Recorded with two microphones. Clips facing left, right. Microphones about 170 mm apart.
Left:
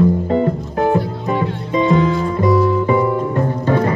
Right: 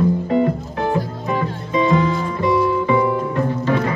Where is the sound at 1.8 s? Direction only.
25° left (ahead or behind).